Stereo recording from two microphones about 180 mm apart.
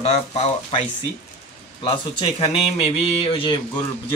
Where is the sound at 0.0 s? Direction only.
35° left (ahead or behind).